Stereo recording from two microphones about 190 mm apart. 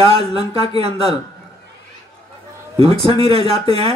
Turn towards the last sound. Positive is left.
turn(degrees=-30)  # may be behind; listen again after turning